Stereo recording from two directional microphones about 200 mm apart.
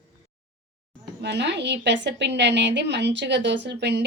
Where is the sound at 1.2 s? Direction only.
60° right (ahead or behind).